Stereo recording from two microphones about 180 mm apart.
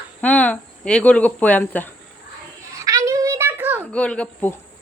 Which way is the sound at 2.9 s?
20° right (ahead or behind).